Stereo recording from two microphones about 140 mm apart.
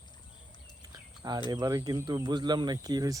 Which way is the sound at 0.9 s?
30° right (ahead or behind).